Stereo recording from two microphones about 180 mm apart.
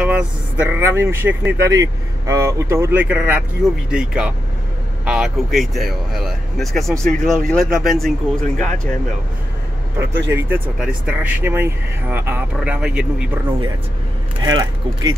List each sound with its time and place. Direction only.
0.0 s speech: 5° right (ahead or behind)
10.3 s speech: 10° right (ahead or behind)
14.4 s speech: 20° right (ahead or behind)